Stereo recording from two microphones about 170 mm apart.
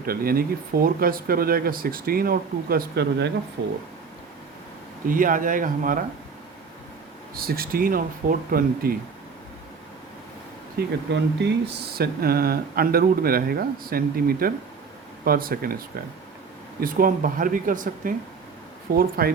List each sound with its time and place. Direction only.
0.0 s speech: 60° right (ahead or behind); by 3.7 s 90° right
5.0 s speech: 55° right (ahead or behind)
7.3 s speech: 60° right (ahead or behind)
10.8 s speech: 90° right; by 15.8 s 60° right (ahead or behind)
16.8 s speech: 55° right (ahead or behind)